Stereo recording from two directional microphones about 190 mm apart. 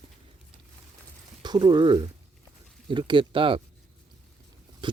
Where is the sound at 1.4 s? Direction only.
20° right (ahead or behind).